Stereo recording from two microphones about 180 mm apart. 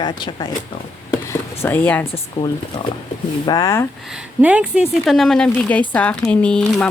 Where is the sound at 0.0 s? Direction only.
25° left (ahead or behind).